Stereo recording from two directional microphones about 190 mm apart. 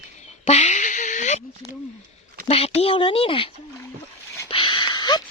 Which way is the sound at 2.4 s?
30° left (ahead or behind).